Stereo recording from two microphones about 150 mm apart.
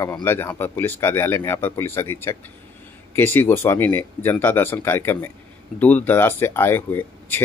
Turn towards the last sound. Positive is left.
turn(degrees=15)  # may be behind; listen again after turning